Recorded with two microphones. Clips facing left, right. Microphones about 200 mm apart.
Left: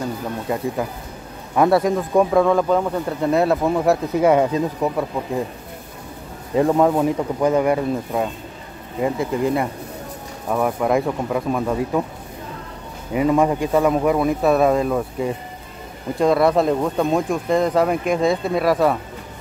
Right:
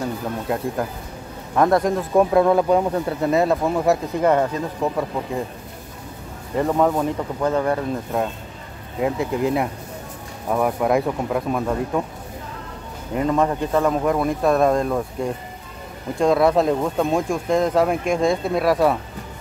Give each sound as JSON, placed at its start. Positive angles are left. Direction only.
{"t": 0.5, "sound": "speech", "side_deg": 0}
{"t": 4.3, "sound": "speech", "side_deg": 10}
{"t": 6.5, "sound": "speech", "side_deg": 10}
{"t": 9.0, "sound": "speech", "side_deg": 0}
{"t": 13.1, "sound": "speech", "side_deg": 5}